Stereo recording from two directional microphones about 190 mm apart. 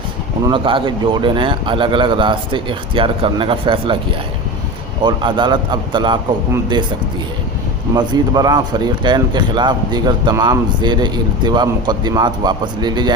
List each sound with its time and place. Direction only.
0.4 s a man's voice: 25° right (ahead or behind)
5.0 s a man's voice: 25° right (ahead or behind)
7.9 s a man's voice: 20° right (ahead or behind)